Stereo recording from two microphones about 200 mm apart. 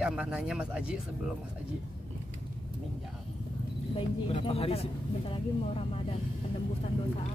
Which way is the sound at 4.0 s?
25° left (ahead or behind).